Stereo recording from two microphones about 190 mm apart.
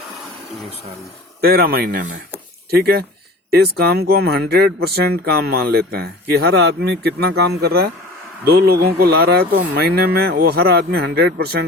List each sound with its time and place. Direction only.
1.4 s speech: 55° right (ahead or behind)